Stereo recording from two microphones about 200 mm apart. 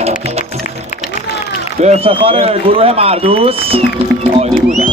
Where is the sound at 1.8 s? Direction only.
30° right (ahead or behind).